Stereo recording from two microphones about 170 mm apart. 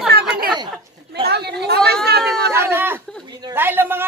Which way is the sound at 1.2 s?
70° right (ahead or behind).